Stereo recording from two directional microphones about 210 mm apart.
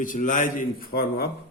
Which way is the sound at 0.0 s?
40° left (ahead or behind).